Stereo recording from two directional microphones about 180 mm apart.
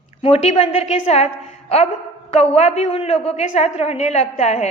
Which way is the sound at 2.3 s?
35° left (ahead or behind).